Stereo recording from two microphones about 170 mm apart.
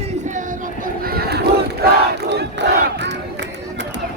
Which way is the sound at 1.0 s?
65° right (ahead or behind).